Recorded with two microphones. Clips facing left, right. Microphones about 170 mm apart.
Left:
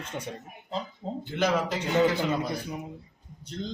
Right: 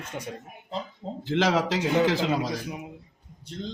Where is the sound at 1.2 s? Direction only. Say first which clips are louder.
Right 3 dB; 90° right.